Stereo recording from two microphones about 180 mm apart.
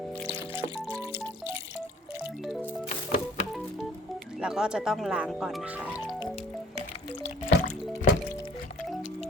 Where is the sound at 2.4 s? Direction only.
Centre (ahead or behind).